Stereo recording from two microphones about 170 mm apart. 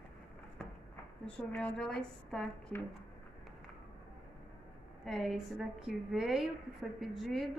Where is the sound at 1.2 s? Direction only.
5° left (ahead or behind).